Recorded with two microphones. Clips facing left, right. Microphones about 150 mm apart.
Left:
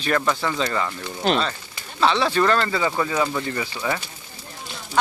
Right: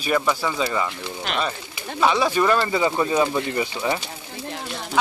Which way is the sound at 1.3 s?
35° left (ahead or behind).